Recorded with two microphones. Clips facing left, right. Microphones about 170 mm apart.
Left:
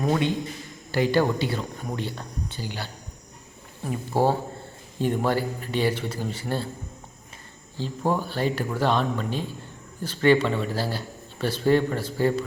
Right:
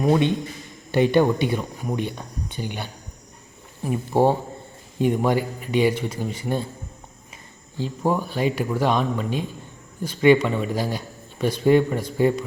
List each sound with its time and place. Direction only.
0.9 s speech: 20° right (ahead or behind)
7.8 s speech: 10° right (ahead or behind)